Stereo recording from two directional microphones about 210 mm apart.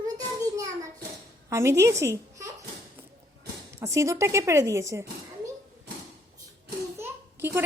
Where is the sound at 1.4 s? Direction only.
15° right (ahead or behind).